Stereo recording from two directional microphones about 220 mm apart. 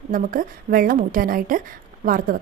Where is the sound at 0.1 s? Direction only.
40° right (ahead or behind).